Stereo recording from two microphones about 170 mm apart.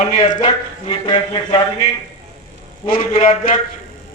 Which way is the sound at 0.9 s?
30° left (ahead or behind).